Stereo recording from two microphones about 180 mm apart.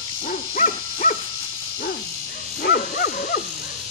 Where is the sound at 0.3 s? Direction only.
45° left (ahead or behind).